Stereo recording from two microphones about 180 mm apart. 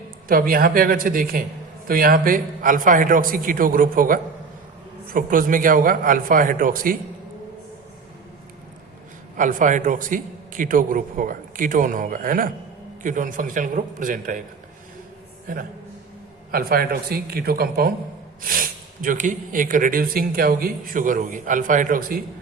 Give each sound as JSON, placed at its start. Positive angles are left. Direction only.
{"t": 0.3, "sound": "speech", "side_deg": -55}
{"t": 9.4, "sound": "speech", "side_deg": -45}
{"t": 15.5, "sound": "speech", "side_deg": -50}